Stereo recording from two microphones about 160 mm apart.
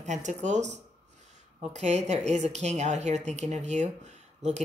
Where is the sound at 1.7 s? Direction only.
45° right (ahead or behind).